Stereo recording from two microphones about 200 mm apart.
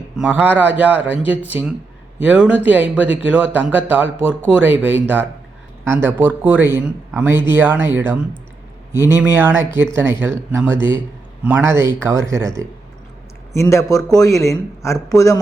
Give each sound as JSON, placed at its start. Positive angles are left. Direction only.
{"t": 0.2, "sound": "speech", "side_deg": -10}
{"t": 13.5, "sound": "speech", "side_deg": 15}